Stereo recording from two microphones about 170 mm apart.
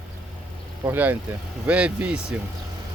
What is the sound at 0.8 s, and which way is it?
Speech, 10° right (ahead or behind).